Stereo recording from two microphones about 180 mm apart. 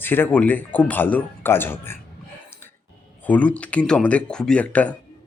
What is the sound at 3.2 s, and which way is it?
Speech, 5° left (ahead or behind).